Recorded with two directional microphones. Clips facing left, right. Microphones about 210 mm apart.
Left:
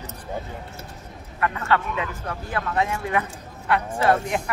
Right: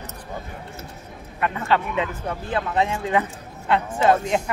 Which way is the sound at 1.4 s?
20° right (ahead or behind).